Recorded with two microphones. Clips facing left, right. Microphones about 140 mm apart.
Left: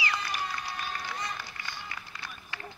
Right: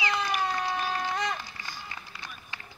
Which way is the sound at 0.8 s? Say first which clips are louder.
Right 7 dB; 90° right.